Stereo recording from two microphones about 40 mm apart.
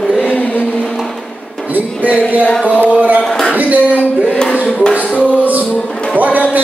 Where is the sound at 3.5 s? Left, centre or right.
Right.